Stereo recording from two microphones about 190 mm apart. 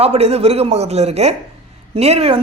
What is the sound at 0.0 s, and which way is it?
Speech, 30° right (ahead or behind).